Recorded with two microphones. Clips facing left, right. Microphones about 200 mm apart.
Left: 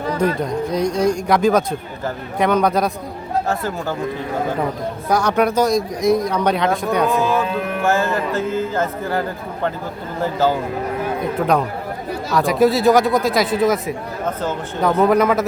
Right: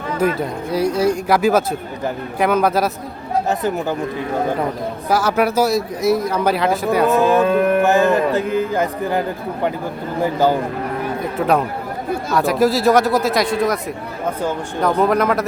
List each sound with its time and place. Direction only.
0.3 s a man's voice: 5° right (ahead or behind)
3.5 s speech: 20° right (ahead or behind)
5.0 s a man's voice: 5° right (ahead or behind)
7.4 s music: 55° right (ahead or behind)
7.9 s speech: 15° right (ahead or behind)
12.3 s a man's voice: centre (ahead or behind)